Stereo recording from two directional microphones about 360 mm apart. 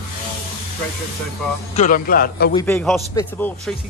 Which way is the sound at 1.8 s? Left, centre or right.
Left.